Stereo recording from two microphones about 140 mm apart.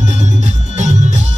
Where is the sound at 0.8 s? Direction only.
55° right (ahead or behind).